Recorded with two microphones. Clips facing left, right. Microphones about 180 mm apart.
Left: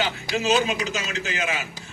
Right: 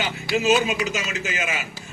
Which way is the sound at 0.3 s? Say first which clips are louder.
Right 2 dB; 15° right (ahead or behind).